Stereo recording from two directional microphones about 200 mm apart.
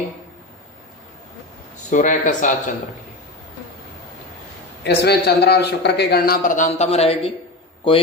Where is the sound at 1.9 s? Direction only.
40° left (ahead or behind).